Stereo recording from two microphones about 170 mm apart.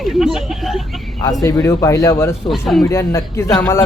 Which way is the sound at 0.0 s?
Centre (ahead or behind).